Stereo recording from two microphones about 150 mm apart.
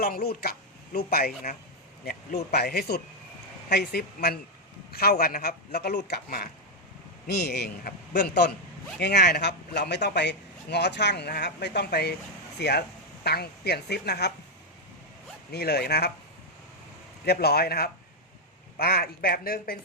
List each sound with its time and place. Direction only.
0.0 s speech: 90° left
9.0 s speech: 90° left
15.5 s speech: 90° left
17.2 s speech: 90° left